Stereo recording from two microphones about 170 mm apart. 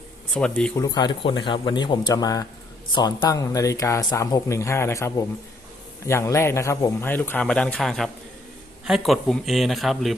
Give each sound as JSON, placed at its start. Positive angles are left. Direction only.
{"t": 0.3, "sound": "a man's voice", "side_deg": 5}
{"t": 0.8, "sound": "a man's voice", "side_deg": 25}